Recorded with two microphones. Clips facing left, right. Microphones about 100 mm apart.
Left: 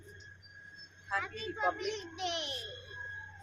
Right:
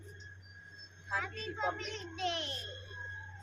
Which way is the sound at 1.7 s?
15° left (ahead or behind).